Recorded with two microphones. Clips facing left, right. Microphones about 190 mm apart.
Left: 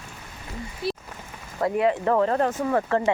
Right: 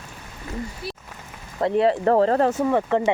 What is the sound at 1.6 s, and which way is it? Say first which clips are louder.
Speech: right 3 dB; 30° right (ahead or behind).